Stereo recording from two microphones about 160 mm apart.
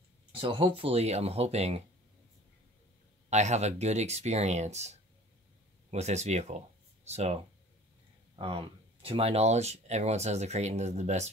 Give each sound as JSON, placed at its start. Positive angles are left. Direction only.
{"t": 0.3, "sound": "speech", "side_deg": -35}
{"t": 3.3, "sound": "speech", "side_deg": -45}
{"t": 9.0, "sound": "speech", "side_deg": -40}